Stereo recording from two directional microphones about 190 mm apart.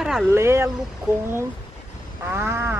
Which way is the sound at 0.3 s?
15° right (ahead or behind).